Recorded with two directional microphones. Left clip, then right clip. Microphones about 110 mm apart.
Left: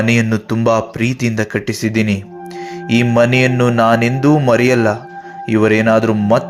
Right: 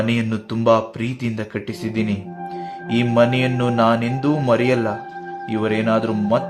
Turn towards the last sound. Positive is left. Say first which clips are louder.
# left 6 dB
turn(degrees=45)  # may be behind; listen again after turning